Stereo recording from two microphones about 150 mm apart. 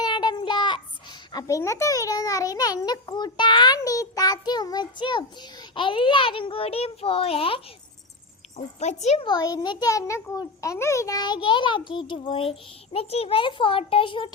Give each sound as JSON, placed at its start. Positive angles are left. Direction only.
{"t": 0.0, "sound": "child singing", "side_deg": 30}
{"t": 1.3, "sound": "a child's voice", "side_deg": 25}
{"t": 8.5, "sound": "a child's voice", "side_deg": 50}
{"t": 9.2, "sound": "a child's voice", "side_deg": 25}